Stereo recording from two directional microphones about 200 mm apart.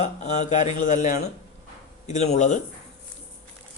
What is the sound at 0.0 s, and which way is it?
Speech, 35° left (ahead or behind).